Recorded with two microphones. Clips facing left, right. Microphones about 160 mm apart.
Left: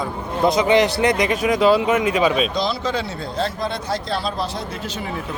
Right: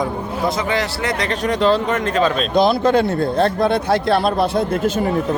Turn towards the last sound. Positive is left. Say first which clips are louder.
# right 10 dB
turn(degrees=-50)  # may be behind; listen again after turning